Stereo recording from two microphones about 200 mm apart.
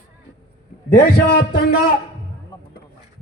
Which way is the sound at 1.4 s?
45° left (ahead or behind).